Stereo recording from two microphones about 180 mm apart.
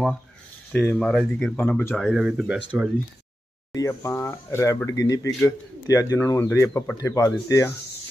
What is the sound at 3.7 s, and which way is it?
Speech, 15° left (ahead or behind).